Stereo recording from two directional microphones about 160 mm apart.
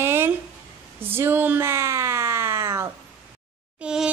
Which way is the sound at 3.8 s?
5° right (ahead or behind).